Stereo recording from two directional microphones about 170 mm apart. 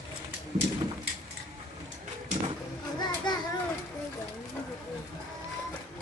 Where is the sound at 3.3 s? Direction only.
25° left (ahead or behind).